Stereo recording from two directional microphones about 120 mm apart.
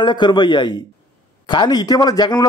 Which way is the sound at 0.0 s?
40° left (ahead or behind).